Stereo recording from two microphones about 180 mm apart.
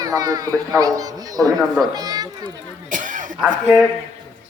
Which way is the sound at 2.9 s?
45° right (ahead or behind).